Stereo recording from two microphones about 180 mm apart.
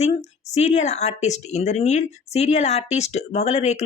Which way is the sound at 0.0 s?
40° left (ahead or behind).